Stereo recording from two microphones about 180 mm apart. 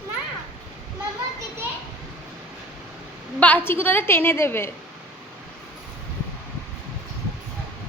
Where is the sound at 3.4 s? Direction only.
10° left (ahead or behind).